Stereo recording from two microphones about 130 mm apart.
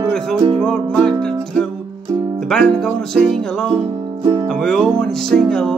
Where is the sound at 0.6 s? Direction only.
5° left (ahead or behind).